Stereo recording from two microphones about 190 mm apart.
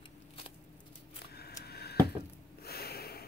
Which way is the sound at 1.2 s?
55° left (ahead or behind).